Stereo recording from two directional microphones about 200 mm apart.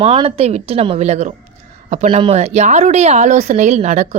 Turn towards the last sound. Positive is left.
turn(degrees=-35)  # may be behind; listen again after turning